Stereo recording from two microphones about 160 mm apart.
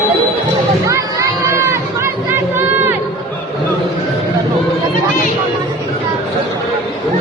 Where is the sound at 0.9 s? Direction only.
20° right (ahead or behind).